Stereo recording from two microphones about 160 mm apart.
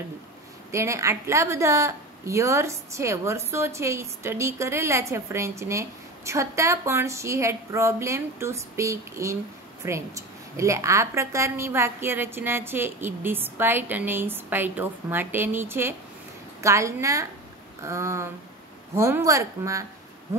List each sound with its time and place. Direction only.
0.7 s a woman's voice: 20° right (ahead or behind)